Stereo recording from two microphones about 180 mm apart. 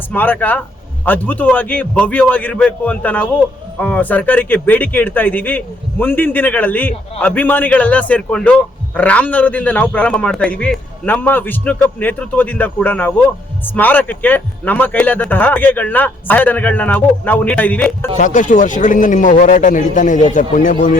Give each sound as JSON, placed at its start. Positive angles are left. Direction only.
{"t": 0.1, "sound": "a man's voice", "side_deg": 10}
{"t": 18.2, "sound": "a man's voice", "side_deg": 45}